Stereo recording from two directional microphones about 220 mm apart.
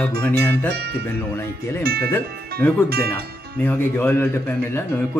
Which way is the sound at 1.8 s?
45° right (ahead or behind).